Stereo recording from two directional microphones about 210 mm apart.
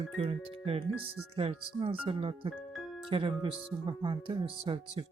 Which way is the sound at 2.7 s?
Centre (ahead or behind).